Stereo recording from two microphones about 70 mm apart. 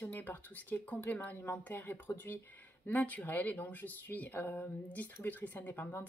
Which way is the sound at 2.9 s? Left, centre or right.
Left.